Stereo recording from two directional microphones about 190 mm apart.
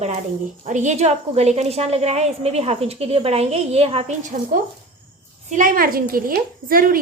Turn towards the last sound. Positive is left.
turn(degrees=-50)  # may be behind; listen again after turning